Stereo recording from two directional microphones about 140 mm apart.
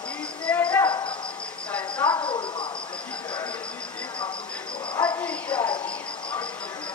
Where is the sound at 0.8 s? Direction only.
35° left (ahead or behind).